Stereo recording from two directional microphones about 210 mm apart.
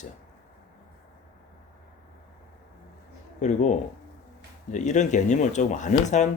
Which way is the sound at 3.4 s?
35° left (ahead or behind).